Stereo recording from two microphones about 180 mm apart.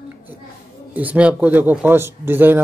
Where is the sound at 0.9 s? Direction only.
10° right (ahead or behind).